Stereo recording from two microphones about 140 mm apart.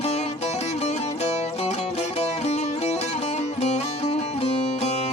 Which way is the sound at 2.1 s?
50° left (ahead or behind).